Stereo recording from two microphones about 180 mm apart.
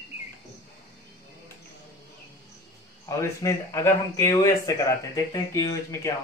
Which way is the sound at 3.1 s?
15° left (ahead or behind).